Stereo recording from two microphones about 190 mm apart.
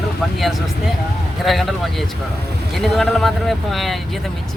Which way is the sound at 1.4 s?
Centre (ahead or behind).